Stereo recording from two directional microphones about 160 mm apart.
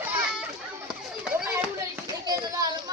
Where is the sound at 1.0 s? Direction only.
5° right (ahead or behind).